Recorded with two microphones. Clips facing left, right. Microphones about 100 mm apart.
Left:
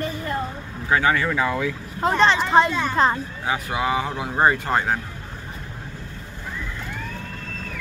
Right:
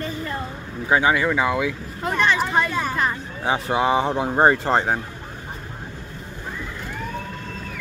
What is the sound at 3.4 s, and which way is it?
Speech, 25° right (ahead or behind).